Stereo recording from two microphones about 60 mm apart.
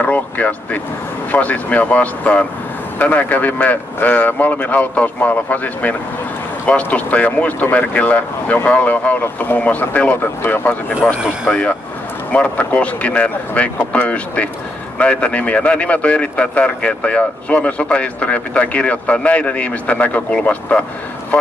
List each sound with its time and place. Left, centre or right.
0.0 s speech: left
11.4 s speech: centre